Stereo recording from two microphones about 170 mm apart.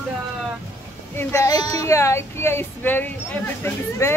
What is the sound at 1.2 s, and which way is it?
Speech, 15° left (ahead or behind).